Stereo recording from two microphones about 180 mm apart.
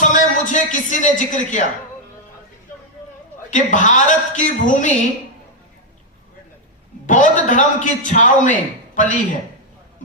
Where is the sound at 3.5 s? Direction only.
45° left (ahead or behind).